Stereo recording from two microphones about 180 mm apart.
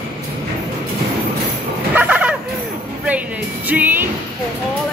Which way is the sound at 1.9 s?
10° right (ahead or behind).